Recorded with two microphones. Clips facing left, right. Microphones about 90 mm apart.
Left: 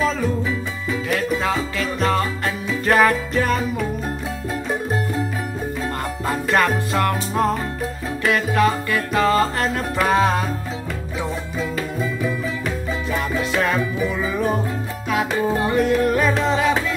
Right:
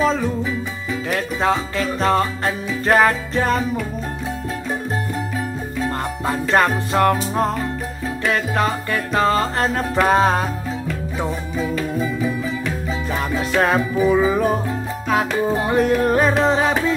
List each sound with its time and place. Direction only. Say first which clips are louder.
1.1 s music: right 2 dB; 35° right (ahead or behind)
6.2 s music: right 1 dB; 25° right (ahead or behind)
12.0 s music: even; 20° right (ahead or behind)
13.1 s music: right 1 dB; 40° right (ahead or behind)
13.7 s music: right 6 dB; 25° right (ahead or behind)
15.7 s music: right 2 dB; 35° right (ahead or behind)